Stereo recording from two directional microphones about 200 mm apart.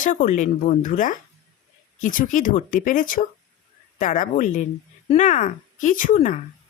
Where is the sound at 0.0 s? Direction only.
40° left (ahead or behind).